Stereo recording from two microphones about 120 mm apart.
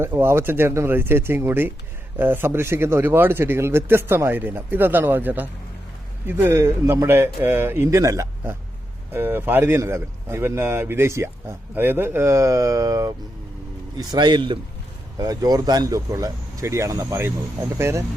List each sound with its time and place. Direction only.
0.0 s a man's voice: 20° right (ahead or behind)